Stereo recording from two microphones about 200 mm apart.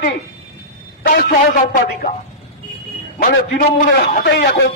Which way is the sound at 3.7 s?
50° left (ahead or behind).